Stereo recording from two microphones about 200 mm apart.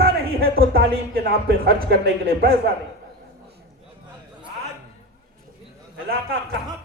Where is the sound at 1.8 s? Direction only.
55° right (ahead or behind).